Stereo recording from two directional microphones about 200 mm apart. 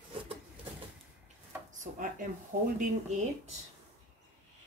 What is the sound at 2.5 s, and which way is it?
Speech, 50° right (ahead or behind).